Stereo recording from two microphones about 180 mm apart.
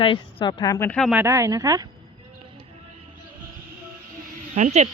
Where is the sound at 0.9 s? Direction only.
5° left (ahead or behind).